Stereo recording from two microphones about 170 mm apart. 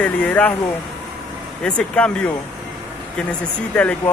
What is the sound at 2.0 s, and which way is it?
Speech, 5° left (ahead or behind).